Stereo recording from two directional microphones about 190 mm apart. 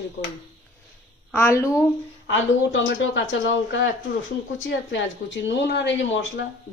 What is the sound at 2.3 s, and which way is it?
Speech, 70° left (ahead or behind).